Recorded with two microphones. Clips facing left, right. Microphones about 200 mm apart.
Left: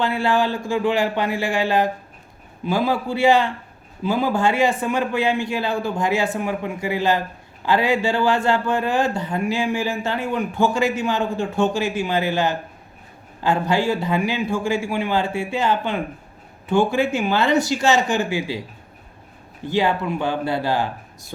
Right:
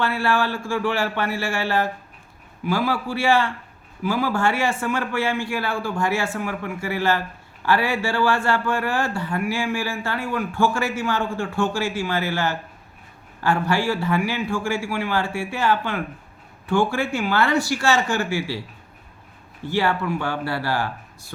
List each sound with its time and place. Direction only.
0.0 s a man's voice: 20° left (ahead or behind)
19.6 s a man's voice: 20° left (ahead or behind)